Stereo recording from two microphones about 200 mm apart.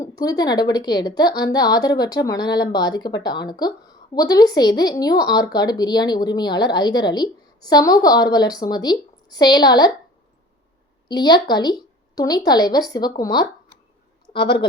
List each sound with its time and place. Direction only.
0.0 s a woman's voice: 20° left (ahead or behind)
11.1 s a woman's voice: 20° left (ahead or behind)